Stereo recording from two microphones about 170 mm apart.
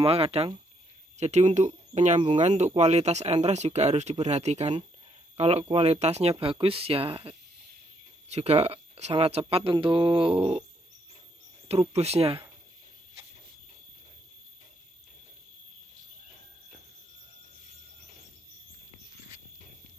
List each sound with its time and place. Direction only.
0.0 s speech: 35° right (ahead or behind)
11.6 s speech: 35° right (ahead or behind)